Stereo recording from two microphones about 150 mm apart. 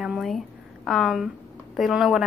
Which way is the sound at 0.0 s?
Centre (ahead or behind).